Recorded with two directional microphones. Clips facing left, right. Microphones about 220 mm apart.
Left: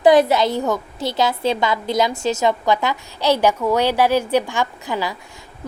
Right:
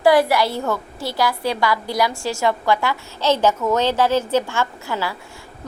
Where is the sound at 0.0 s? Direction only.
20° left (ahead or behind).